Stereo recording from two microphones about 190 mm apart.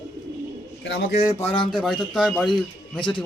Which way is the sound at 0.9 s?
60° left (ahead or behind).